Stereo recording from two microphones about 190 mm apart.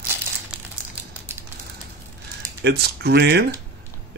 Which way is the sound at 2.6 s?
60° right (ahead or behind).